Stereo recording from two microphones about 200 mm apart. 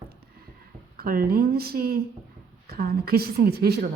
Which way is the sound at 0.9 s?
50° right (ahead or behind).